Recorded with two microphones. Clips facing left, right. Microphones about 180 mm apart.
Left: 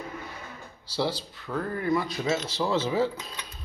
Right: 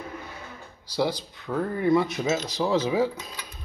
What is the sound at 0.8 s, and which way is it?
Speech, 15° right (ahead or behind).